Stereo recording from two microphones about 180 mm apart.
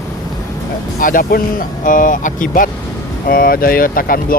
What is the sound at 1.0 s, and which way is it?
Speech, 50° left (ahead or behind).